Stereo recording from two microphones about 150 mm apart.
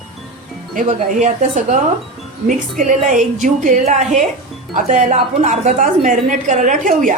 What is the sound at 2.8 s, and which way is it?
A woman's voice, 60° right (ahead or behind).